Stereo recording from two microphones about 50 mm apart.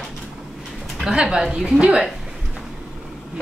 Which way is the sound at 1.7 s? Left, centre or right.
Right.